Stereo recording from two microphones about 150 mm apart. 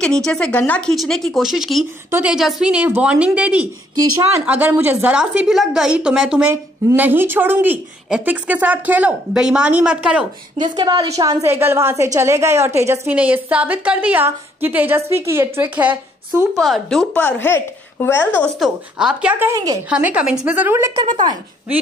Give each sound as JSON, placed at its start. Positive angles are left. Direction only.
{"t": 0.0, "sound": "speech", "side_deg": 5}
{"t": 2.0, "sound": "a woman's voice", "side_deg": -15}
{"t": 3.9, "sound": "a woman's voice", "side_deg": -25}
{"t": 4.5, "sound": "a woman's voice", "side_deg": -10}
{"t": 10.6, "sound": "a woman's voice", "side_deg": -30}
{"t": 16.6, "sound": "a woman's voice", "side_deg": 0}
{"t": 18.6, "sound": "a woman's voice", "side_deg": -5}
{"t": 19.5, "sound": "a woman's voice", "side_deg": -25}
{"t": 19.9, "sound": "a woman's voice", "side_deg": -10}